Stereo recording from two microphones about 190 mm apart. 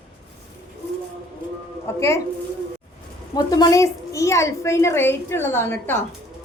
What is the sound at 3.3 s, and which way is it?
A woman's voice, 20° left (ahead or behind).